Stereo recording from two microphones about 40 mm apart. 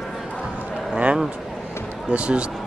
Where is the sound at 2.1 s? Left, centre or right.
Right.